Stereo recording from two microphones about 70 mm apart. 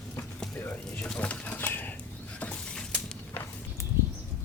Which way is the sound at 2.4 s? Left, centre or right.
Centre.